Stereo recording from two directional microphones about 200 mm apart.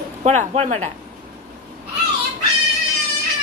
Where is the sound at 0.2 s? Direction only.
35° right (ahead or behind).